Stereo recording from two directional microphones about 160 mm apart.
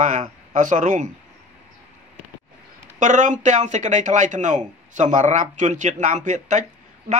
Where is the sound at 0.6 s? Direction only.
50° right (ahead or behind).